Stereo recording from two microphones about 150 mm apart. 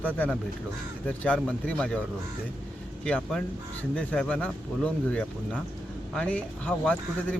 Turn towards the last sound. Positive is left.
turn(degrees=10)  # may be behind; listen again after turning